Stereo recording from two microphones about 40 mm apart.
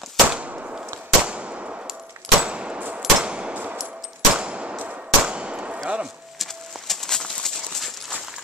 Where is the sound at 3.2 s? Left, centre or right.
Right.